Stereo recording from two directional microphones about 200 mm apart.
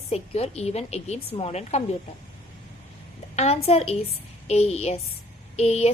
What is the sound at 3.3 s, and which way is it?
A woman's voice, 30° left (ahead or behind).